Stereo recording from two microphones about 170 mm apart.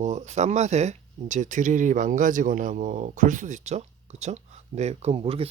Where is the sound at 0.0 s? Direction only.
45° right (ahead or behind).